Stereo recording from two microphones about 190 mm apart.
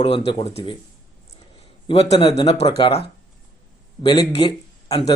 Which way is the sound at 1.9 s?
30° left (ahead or behind).